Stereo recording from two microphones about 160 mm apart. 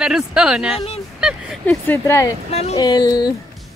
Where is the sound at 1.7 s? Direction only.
15° left (ahead or behind).